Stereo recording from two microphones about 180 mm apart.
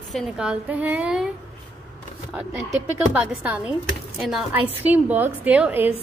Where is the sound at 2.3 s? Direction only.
5° right (ahead or behind).